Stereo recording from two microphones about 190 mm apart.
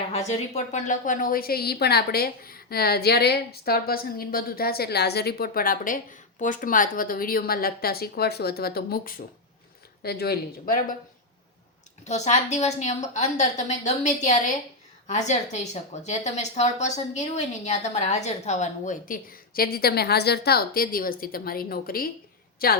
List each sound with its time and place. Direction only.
0.1 s a woman's voice: 35° left (ahead or behind); by 10.8 s 55° left (ahead or behind)
12.0 s a woman's voice: 35° left (ahead or behind); by 22.8 s 50° left (ahead or behind)